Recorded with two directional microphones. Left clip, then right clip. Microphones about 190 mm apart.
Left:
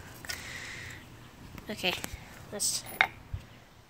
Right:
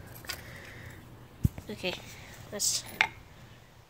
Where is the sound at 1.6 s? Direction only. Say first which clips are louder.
Left 5 dB; centre (ahead or behind).